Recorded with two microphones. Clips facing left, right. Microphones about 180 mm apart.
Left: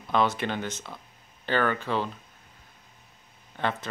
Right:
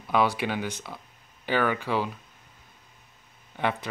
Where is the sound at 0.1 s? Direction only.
10° right (ahead or behind).